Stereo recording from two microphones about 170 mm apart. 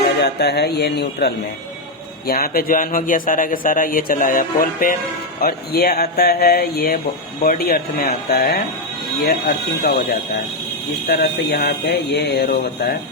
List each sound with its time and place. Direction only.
0.2 s speech: 75° left (ahead or behind)
2.2 s speech: 60° left (ahead or behind); by 12.5 s 80° left